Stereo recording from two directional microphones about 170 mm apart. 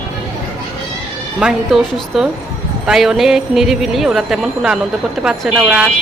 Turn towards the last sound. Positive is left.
turn(degrees=-5)  # may be behind; listen again after turning